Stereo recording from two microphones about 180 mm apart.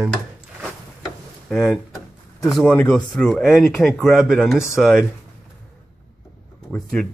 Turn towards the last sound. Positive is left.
turn(degrees=5)  # may be behind; listen again after turning